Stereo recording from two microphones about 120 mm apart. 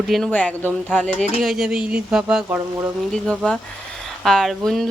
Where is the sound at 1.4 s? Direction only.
5° right (ahead or behind).